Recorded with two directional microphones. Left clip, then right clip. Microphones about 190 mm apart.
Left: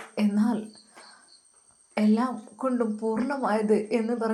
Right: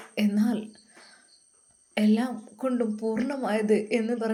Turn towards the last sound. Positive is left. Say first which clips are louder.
# even
turn(degrees=-15)  # may be behind; listen again after turning